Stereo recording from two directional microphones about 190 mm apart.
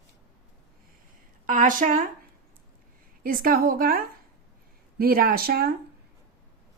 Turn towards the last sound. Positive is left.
turn(degrees=-50)  # may be behind; listen again after turning